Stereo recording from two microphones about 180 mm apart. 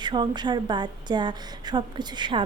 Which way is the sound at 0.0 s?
25° right (ahead or behind).